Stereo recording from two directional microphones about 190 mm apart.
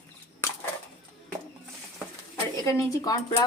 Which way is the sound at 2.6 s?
15° left (ahead or behind).